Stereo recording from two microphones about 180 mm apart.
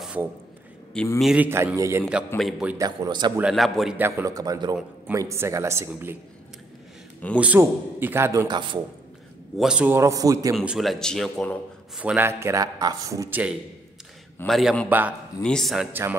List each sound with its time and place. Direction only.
0.0 s a sound: 5° right (ahead or behind)
1.2 s a man's voice: 5° right (ahead or behind)
2.8 s a man's voice: 20° right (ahead or behind)
3.3 s speech: centre (ahead or behind)
4.0 s a man's voice: 20° right (ahead or behind)
7.3 s a man's voice: 10° right (ahead or behind); by 8.8 s 25° right (ahead or behind)
9.6 s a man's voice: 5° right (ahead or behind)
10.5 s speech: 5° right (ahead or behind)
12.0 s a man's voice: 10° right (ahead or behind)
14.4 s speech: centre (ahead or behind)
15.4 s speech: centre (ahead or behind)
15.9 s a man's voice: 10° right (ahead or behind)